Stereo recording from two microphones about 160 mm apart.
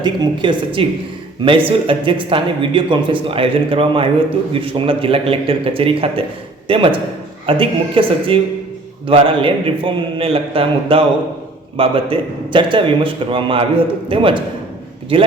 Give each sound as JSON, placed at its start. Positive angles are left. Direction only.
{"t": 0.0, "sound": "a woman's voice", "side_deg": -30}